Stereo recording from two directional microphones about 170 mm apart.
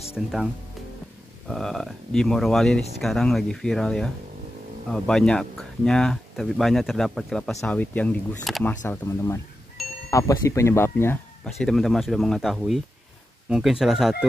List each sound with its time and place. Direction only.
0.1 s speech: 5° right (ahead or behind)
1.5 s speech: centre (ahead or behind)
9.8 s a sound: centre (ahead or behind)
10.1 s speech: 20° left (ahead or behind)
11.5 s speech: centre (ahead or behind)